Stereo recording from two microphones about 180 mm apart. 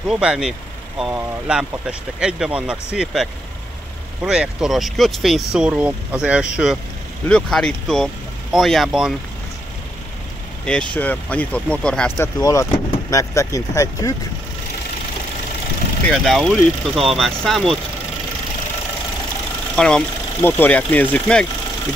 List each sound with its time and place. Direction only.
0.1 s speech: 5° right (ahead or behind)
10.6 s speech: 5° left (ahead or behind)
12.2 s speech: 20° left (ahead or behind)
16.3 s speech: centre (ahead or behind)
19.7 s speech: 5° left (ahead or behind)